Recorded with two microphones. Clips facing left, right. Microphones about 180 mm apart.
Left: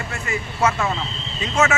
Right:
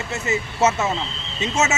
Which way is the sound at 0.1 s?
20° right (ahead or behind).